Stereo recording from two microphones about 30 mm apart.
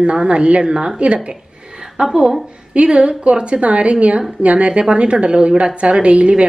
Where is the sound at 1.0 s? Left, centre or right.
Right.